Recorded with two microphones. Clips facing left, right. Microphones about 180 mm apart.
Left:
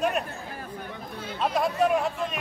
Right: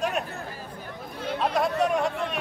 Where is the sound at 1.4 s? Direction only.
Centre (ahead or behind).